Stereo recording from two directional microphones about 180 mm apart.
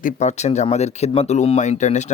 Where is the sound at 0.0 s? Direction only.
40° left (ahead or behind).